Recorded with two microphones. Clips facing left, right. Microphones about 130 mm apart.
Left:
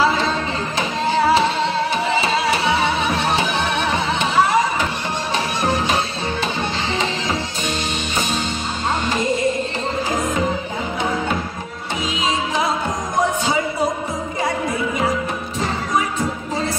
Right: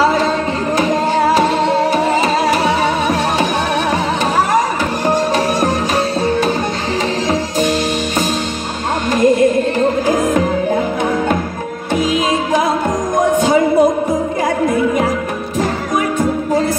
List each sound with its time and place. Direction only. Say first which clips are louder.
0.7 s music: right 5 dB; 45° right (ahead or behind)
9.1 s music: right 11 dB; 50° right (ahead or behind)
13.4 s music: right 9 dB; 50° right (ahead or behind)